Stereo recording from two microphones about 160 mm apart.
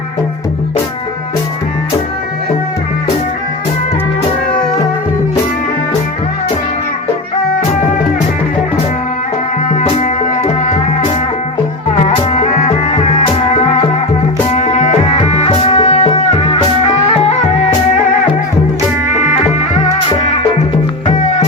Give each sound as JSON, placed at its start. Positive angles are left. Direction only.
{"t": 9.6, "sound": "music", "side_deg": 50}
{"t": 12.1, "sound": "music", "side_deg": 40}
{"t": 19.2, "sound": "music", "side_deg": 45}